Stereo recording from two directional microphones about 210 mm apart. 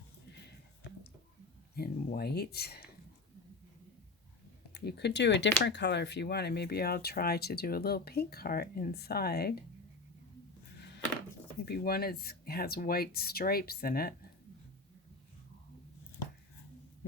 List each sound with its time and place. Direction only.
1.7 s speech: 50° left (ahead or behind)
4.7 s speech: 50° left (ahead or behind)
11.6 s speech: 45° left (ahead or behind)